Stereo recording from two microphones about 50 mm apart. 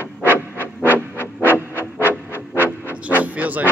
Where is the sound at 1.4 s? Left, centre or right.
Right.